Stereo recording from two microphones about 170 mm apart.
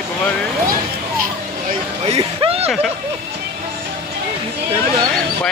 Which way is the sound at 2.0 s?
35° right (ahead or behind).